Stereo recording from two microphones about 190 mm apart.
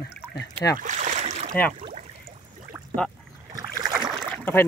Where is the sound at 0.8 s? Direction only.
40° right (ahead or behind).